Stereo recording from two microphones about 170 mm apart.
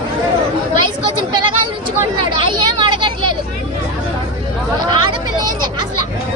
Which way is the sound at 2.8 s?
25° right (ahead or behind).